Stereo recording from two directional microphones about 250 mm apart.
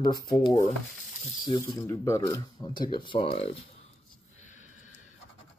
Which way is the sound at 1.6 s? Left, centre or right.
Centre.